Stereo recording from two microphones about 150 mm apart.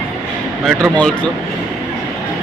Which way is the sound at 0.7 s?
5° left (ahead or behind).